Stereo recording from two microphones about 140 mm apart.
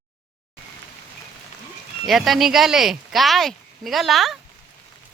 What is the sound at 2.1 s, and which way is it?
Speech, centre (ahead or behind).